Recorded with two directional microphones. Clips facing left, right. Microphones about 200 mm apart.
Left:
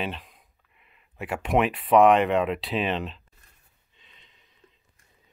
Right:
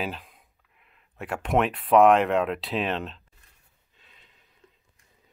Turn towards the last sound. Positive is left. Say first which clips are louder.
# even
turn(degrees=-5)  # may be behind; listen again after turning